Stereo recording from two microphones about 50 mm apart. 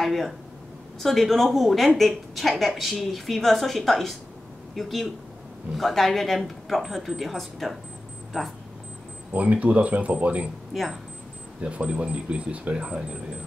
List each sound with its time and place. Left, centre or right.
0.0 s a woman's voice: centre
9.3 s speech: right
10.7 s speech: centre
11.6 s speech: right